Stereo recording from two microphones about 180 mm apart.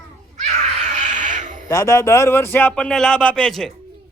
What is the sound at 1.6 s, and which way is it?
A man's voice, 20° left (ahead or behind).